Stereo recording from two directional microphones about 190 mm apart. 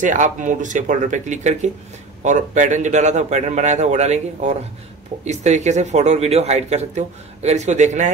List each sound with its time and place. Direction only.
0.0 s speech: 40° right (ahead or behind)